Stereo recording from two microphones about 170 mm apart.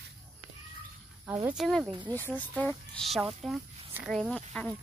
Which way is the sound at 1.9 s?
25° right (ahead or behind).